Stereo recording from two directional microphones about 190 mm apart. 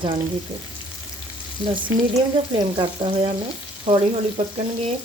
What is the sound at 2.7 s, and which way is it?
Frying, 25° right (ahead or behind).